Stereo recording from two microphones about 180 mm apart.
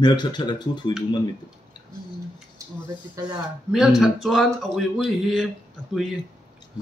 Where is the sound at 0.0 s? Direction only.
25° left (ahead or behind).